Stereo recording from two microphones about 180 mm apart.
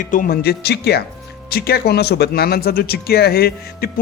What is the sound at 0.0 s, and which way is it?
A man's voice, 50° left (ahead or behind).